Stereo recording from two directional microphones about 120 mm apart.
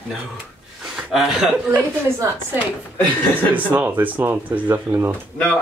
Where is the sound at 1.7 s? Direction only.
20° right (ahead or behind).